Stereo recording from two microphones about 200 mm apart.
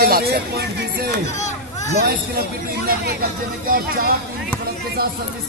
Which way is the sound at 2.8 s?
50° right (ahead or behind).